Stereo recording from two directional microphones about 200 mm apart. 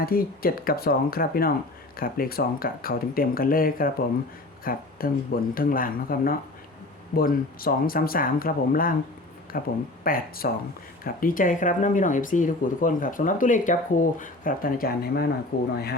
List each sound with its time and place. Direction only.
0.0 s speech: 50° left (ahead or behind)